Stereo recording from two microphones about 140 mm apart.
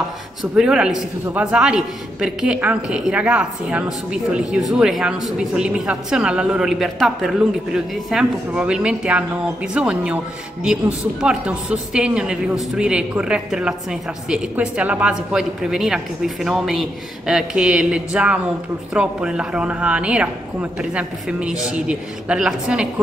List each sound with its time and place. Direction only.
0.4 s a woman's voice: 5° right (ahead or behind)
11.1 s a woman's voice: 5° right (ahead or behind)